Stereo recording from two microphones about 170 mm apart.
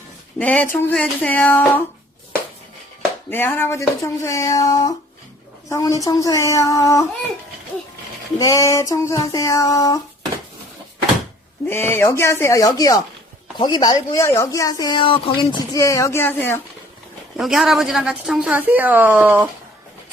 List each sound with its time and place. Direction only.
0.3 s speech: 10° left (ahead or behind)
3.2 s speech: 10° left (ahead or behind)
8.4 s speech: 20° left (ahead or behind)
11.7 s speech: 15° left (ahead or behind)
17.3 s a woman's voice: centre (ahead or behind)